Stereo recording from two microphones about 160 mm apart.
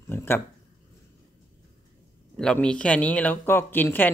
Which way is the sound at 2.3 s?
5° left (ahead or behind).